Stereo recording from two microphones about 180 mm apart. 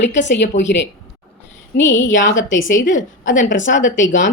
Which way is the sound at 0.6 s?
85° left.